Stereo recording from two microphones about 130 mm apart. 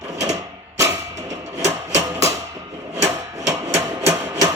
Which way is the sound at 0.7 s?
25° right (ahead or behind).